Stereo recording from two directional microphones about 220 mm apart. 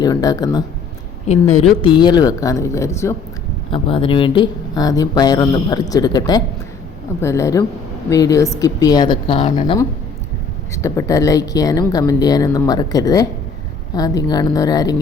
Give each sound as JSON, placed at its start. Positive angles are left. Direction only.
{"t": 0.0, "sound": "speech", "side_deg": 15}
{"t": 1.6, "sound": "speech", "side_deg": 20}
{"t": 3.7, "sound": "speech", "side_deg": 25}
{"t": 10.8, "sound": "speech", "side_deg": 15}